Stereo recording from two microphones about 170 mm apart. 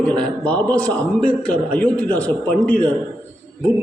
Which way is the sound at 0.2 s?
10° left (ahead or behind).